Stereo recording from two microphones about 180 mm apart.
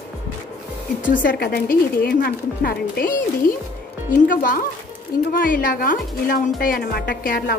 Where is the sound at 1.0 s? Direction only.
50° left (ahead or behind).